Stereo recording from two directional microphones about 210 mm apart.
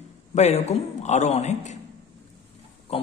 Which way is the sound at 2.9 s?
30° left (ahead or behind).